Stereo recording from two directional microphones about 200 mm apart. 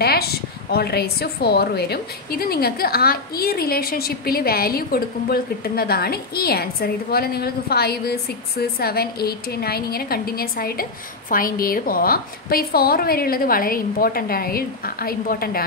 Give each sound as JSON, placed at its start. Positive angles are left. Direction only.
{"t": 0.0, "sound": "a woman's voice", "side_deg": 50}